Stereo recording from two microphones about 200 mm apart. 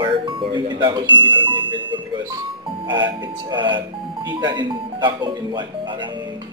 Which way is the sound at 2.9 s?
20° right (ahead or behind).